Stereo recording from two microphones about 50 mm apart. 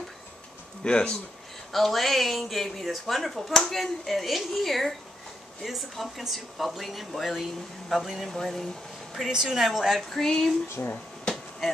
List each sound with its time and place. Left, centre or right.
0.8 s speech: centre
1.7 s speech: centre
8.3 s speech: centre
9.3 s speech: centre
11.3 s a sound: centre